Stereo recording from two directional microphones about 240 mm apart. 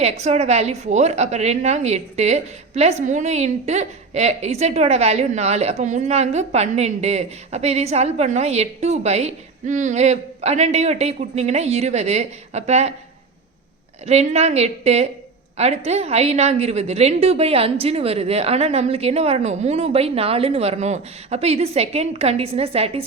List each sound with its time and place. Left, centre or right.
0.0 s a woman's voice: right
14.0 s a woman's voice: right